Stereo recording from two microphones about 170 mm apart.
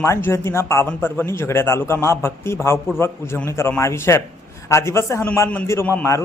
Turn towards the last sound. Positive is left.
turn(degrees=15)  # may be behind; listen again after turning